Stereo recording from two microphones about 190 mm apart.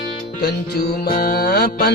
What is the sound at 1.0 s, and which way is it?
Music, 50° left (ahead or behind).